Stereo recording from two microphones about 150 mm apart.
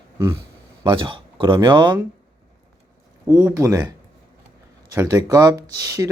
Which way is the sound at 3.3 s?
15° right (ahead or behind).